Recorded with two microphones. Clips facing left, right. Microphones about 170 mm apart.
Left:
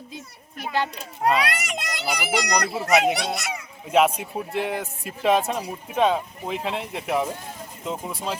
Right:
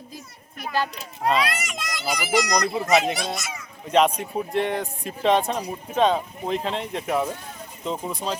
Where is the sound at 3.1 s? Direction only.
70° left (ahead or behind).